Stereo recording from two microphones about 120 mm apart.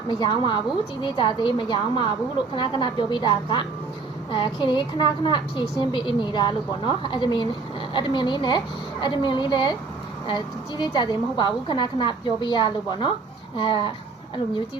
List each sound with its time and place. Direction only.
0.1 s a woman's voice: 40° left (ahead or behind)